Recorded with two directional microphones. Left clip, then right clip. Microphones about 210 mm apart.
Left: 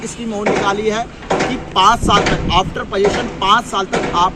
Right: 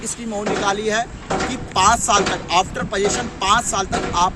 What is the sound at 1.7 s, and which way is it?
Speech, 25° right (ahead or behind).